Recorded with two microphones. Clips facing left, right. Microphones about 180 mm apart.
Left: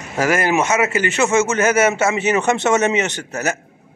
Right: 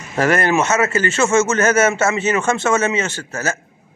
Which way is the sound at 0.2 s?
10° left (ahead or behind).